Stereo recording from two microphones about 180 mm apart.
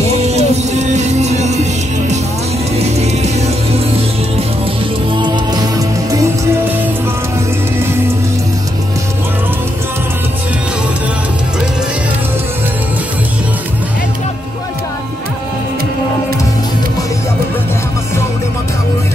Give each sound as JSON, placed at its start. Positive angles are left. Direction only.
{"t": 0.0, "sound": "music", "side_deg": -35}
{"t": 5.2, "sound": "music", "side_deg": -25}